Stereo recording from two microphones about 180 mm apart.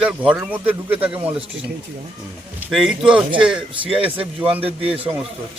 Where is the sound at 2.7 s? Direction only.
Centre (ahead or behind).